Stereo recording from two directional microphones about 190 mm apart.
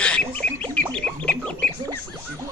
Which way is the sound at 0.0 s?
5° left (ahead or behind).